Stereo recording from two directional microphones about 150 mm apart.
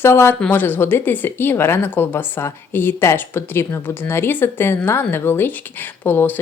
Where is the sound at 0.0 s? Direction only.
15° left (ahead or behind).